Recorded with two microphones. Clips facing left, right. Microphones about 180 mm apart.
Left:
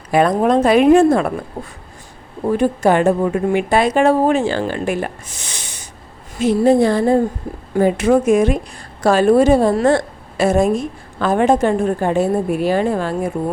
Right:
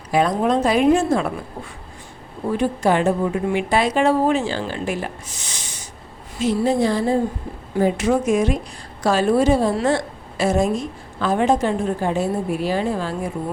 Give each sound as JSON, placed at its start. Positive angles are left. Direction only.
{"t": 0.1, "sound": "a woman's voice", "side_deg": 55}
{"t": 1.6, "sound": "a woman's voice", "side_deg": 40}